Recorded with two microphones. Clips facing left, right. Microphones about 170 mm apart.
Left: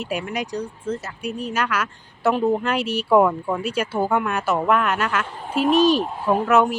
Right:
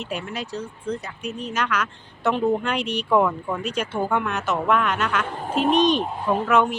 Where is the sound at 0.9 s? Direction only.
5° left (ahead or behind).